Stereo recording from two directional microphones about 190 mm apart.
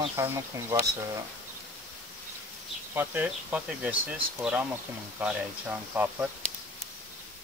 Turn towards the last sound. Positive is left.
turn(degrees=-10)  # may be behind; listen again after turning